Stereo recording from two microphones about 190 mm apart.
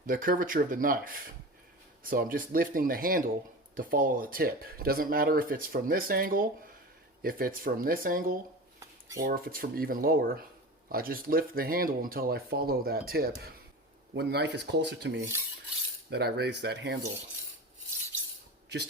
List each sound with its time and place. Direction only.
0.0 s speech: 45° right (ahead or behind)
8.8 s dishes: 15° right (ahead or behind)
9.2 s speech: 50° right (ahead or behind)
14.2 s rub: 60° right (ahead or behind)